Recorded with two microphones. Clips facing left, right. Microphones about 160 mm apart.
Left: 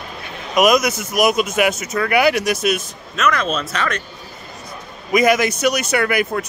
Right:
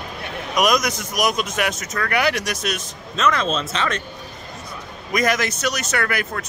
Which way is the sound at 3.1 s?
25° right (ahead or behind).